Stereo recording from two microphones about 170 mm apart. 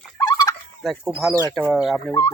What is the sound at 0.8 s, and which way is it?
Speech, centre (ahead or behind).